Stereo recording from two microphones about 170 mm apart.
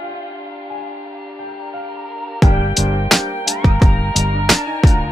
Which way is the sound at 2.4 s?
Centre (ahead or behind).